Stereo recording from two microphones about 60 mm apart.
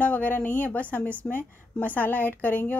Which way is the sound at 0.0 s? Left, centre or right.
Left.